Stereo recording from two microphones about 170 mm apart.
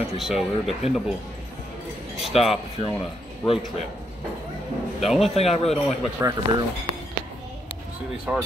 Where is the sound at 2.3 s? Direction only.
35° left (ahead or behind).